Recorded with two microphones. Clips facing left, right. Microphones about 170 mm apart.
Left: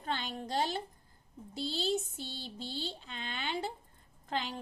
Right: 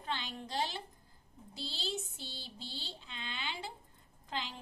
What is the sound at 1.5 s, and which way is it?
A woman's voice, 50° left (ahead or behind).